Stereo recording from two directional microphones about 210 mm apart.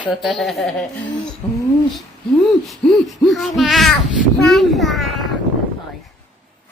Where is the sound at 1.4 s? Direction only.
25° left (ahead or behind).